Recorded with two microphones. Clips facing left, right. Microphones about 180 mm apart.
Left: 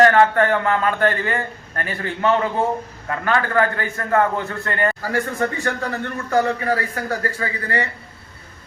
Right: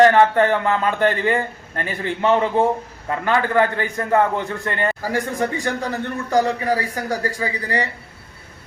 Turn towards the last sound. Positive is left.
turn(degrees=-15)  # may be behind; listen again after turning